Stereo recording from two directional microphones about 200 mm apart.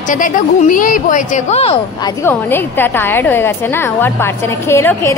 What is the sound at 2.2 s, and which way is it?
A woman's voice, 10° left (ahead or behind).